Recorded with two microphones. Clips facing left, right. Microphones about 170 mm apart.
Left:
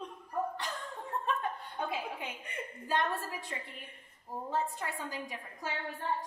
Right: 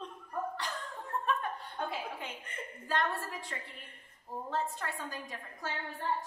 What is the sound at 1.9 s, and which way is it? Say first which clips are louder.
A woman's voice: left 2 dB; 15° left (ahead or behind).